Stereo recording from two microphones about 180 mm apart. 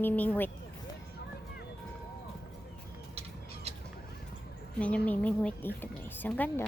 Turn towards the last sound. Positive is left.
turn(degrees=10)  # may be behind; listen again after turning